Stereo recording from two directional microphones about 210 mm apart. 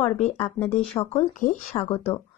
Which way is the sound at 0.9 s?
30° left (ahead or behind).